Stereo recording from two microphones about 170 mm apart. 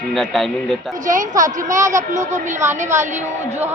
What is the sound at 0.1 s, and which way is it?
Speech, centre (ahead or behind).